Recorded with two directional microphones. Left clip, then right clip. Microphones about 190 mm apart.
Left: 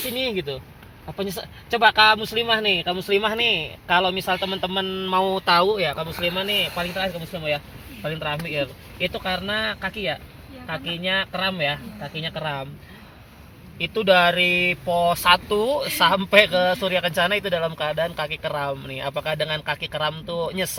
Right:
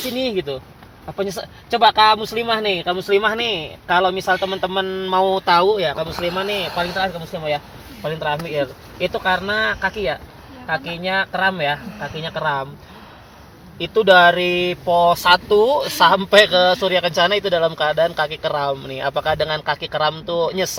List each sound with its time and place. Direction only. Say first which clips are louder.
0.3 s speech: right 4 dB; 25° right (ahead or behind); by 12.6 s 10° right (ahead or behind)
13.7 s speech: right 6 dB; 15° right (ahead or behind)